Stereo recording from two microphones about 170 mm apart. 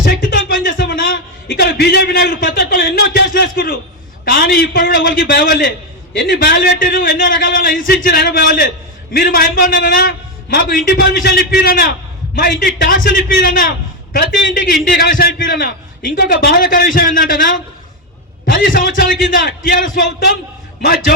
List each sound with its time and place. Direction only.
0.0 s a sound: 60° left (ahead or behind)
4.3 s a man's voice: 65° left (ahead or behind)
18.5 s a man's voice: 55° left (ahead or behind)